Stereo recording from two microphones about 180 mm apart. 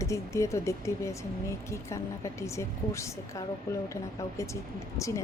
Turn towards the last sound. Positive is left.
turn(degrees=15)  # may be behind; listen again after turning